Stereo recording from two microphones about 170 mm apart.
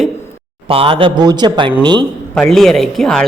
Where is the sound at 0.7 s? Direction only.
35° right (ahead or behind).